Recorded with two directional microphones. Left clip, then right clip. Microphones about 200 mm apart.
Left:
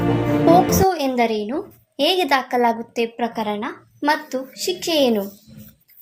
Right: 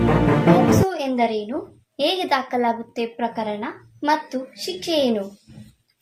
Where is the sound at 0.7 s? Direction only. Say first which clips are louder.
Left 2 dB; 35° left (ahead or behind).